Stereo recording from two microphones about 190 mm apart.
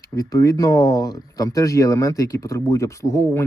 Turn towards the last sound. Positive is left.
turn(degrees=15)  # may be behind; listen again after turning